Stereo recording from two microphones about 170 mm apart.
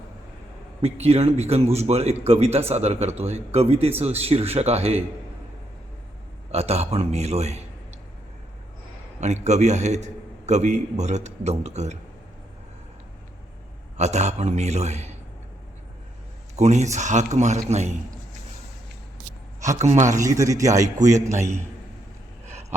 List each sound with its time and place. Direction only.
0.8 s speech: 35° right (ahead or behind)
6.5 s speech: 40° right (ahead or behind)
9.2 s a man's voice: 40° right (ahead or behind)
13.9 s speech: 40° right (ahead or behind)
16.6 s a man's voice: 40° right (ahead or behind)
19.6 s a man's voice: 45° right (ahead or behind)
20.2 s a man's voice: 20° right (ahead or behind)